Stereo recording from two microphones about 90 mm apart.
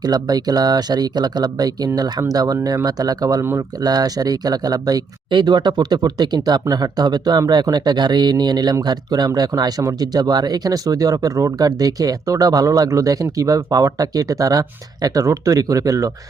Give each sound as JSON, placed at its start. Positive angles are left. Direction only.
{"t": 0.0, "sound": "speech", "side_deg": -50}